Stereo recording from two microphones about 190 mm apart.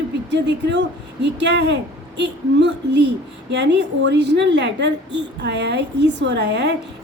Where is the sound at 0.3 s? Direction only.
65° right (ahead or behind).